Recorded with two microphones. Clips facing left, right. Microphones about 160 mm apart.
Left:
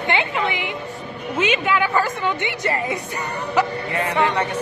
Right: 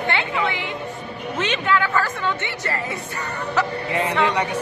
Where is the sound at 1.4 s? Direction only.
10° left (ahead or behind).